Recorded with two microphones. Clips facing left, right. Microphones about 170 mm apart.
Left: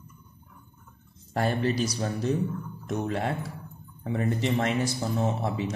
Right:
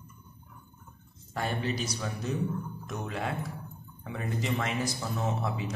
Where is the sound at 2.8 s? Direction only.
30° left (ahead or behind).